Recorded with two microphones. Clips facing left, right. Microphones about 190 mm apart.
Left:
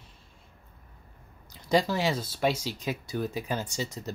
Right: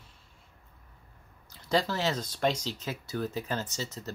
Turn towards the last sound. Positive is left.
turn(degrees=15)  # may be behind; listen again after turning